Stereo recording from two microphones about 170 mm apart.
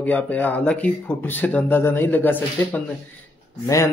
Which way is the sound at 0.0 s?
10° left (ahead or behind).